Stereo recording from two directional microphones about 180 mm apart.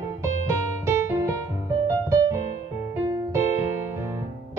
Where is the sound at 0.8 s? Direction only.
15° right (ahead or behind).